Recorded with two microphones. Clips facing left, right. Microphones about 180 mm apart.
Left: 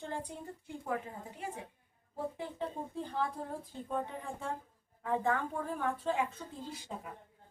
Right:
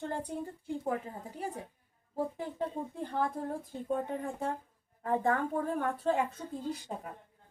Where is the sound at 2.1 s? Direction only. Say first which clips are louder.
Right 4 dB; 45° right (ahead or behind).